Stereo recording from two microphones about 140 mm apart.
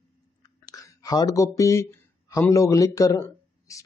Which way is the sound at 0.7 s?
25° left (ahead or behind).